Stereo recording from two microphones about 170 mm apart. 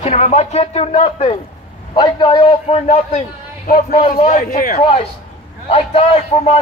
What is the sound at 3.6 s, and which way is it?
Speech, 60° left (ahead or behind).